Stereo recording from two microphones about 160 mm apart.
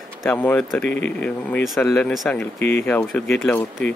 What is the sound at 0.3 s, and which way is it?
Speech, 10° left (ahead or behind).